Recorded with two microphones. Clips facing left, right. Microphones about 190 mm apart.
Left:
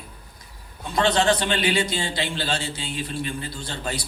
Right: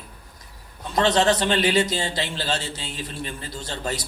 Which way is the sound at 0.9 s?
40° right (ahead or behind).